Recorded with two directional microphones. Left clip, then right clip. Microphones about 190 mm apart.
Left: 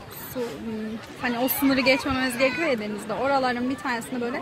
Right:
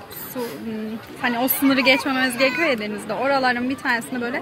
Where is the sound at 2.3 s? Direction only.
45° right (ahead or behind).